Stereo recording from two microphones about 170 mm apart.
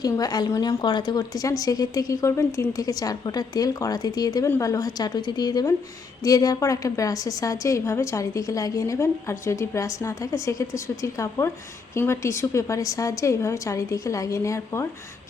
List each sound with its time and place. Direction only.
0.0 s a woman's voice: 25° left (ahead or behind)